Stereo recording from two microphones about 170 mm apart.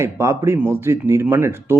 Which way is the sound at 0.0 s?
15° right (ahead or behind).